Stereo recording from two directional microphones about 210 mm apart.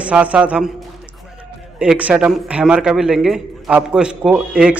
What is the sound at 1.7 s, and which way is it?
A man's voice, 5° right (ahead or behind).